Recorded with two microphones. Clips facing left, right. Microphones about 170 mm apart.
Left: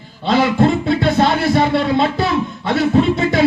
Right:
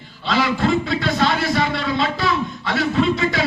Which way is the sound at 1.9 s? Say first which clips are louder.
Left 6 dB; 55° left (ahead or behind).